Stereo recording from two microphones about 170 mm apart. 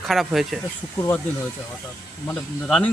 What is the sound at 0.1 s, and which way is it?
Speech, centre (ahead or behind).